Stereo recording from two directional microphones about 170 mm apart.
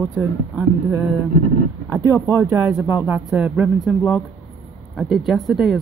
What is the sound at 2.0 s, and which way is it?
A man's voice, 15° right (ahead or behind).